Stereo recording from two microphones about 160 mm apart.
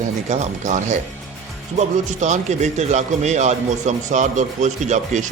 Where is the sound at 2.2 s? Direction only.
45° right (ahead or behind).